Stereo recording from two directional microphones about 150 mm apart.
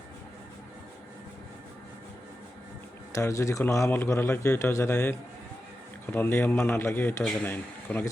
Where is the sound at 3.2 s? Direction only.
20° left (ahead or behind).